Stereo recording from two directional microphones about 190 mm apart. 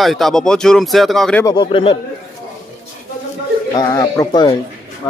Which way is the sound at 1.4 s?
25° left (ahead or behind).